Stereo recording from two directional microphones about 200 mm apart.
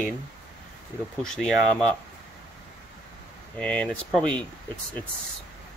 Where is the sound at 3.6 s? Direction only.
5° left (ahead or behind).